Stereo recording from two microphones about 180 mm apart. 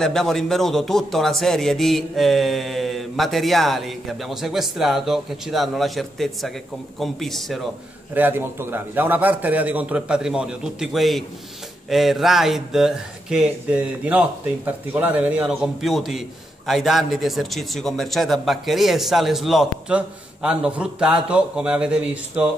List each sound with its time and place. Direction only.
0.0 s speech: 5° left (ahead or behind)
8.1 s a man's voice: 10° right (ahead or behind)